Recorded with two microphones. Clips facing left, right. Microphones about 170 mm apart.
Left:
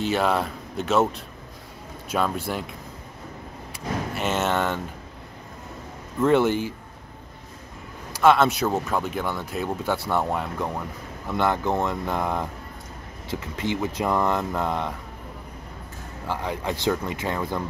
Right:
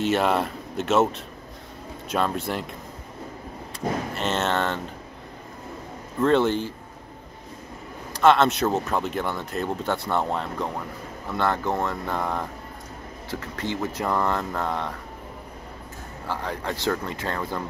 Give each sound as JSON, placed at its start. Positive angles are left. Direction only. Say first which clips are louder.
{"t": 0.0, "sound": "speech", "louder": "right 1 dB", "side_deg": 0}
{"t": 4.1, "sound": "speech", "louder": "left 3 dB", "side_deg": 5}
{"t": 6.2, "sound": "speech", "louder": "left 1 dB", "side_deg": 10}
{"t": 8.2, "sound": "speech", "louder": "even", "side_deg": 5}
{"t": 16.3, "sound": "speech", "louder": "left 2 dB", "side_deg": 15}